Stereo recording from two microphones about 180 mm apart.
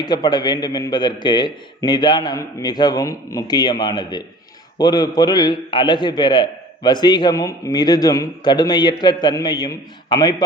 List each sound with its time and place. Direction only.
0.0 s a man's voice: 25° left (ahead or behind)